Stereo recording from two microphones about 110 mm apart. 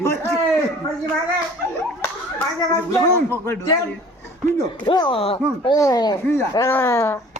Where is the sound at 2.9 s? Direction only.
25° left (ahead or behind).